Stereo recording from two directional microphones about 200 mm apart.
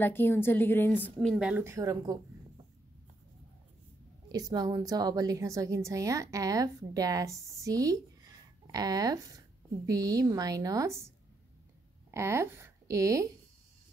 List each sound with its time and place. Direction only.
0.0 s a woman's voice: 10° left (ahead or behind); by 2.6 s 15° right (ahead or behind)
4.3 s a woman's voice: 20° right (ahead or behind)
12.1 s speech: 10° right (ahead or behind)